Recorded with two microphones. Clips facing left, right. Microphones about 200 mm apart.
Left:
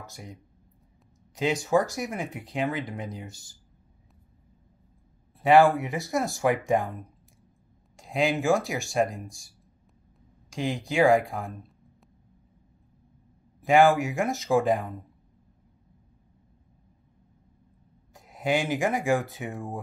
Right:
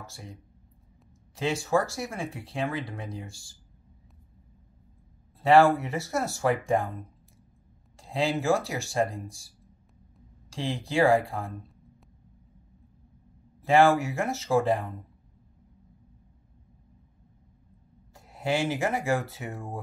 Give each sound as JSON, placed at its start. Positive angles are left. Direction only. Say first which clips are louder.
{"t": 0.0, "sound": "speech", "louder": "left 1 dB", "side_deg": 15}
{"t": 5.4, "sound": "speech", "louder": "left 1 dB", "side_deg": 15}
{"t": 8.0, "sound": "speech", "louder": "left 2 dB", "side_deg": 15}
{"t": 10.5, "sound": "speech", "louder": "left 1 dB", "side_deg": 15}
{"t": 13.6, "sound": "speech", "louder": "left 1 dB", "side_deg": 15}
{"t": 18.1, "sound": "speech", "louder": "left 2 dB", "side_deg": 15}